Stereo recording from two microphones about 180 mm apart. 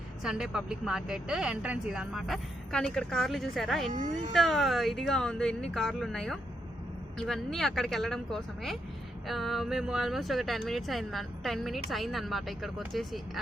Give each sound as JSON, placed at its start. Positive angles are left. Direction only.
{"t": 0.2, "sound": "speech", "side_deg": -5}